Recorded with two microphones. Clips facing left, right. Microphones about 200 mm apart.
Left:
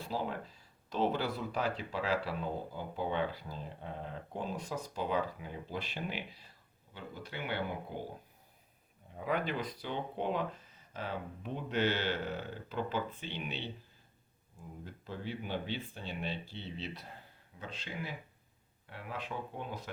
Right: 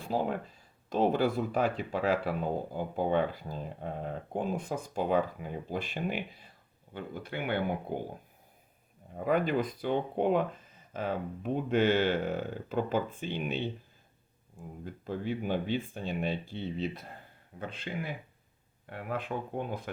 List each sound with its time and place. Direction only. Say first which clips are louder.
0.0 s speech: right 6 dB; 50° right (ahead or behind)
9.1 s speech: right 7 dB; 45° right (ahead or behind)
14.8 s speech: right 8 dB; 50° right (ahead or behind)